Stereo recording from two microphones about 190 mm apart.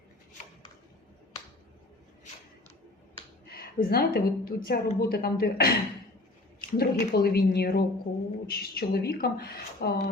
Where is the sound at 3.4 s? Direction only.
55° left (ahead or behind).